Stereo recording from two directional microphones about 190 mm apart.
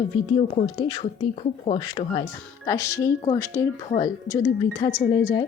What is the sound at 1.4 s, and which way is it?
Speech, 35° left (ahead or behind).